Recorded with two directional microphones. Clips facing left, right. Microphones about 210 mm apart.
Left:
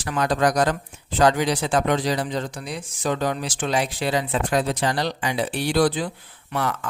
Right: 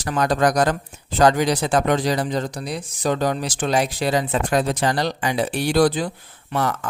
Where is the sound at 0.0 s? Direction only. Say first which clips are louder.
Right 2 dB; 40° right (ahead or behind).